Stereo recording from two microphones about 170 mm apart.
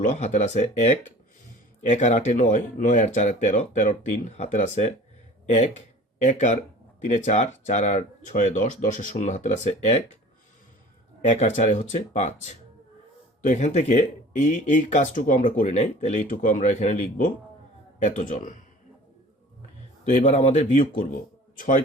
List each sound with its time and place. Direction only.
0.0 s speech: 45° left (ahead or behind)
11.3 s speech: 45° left (ahead or behind)
20.2 s speech: 45° left (ahead or behind)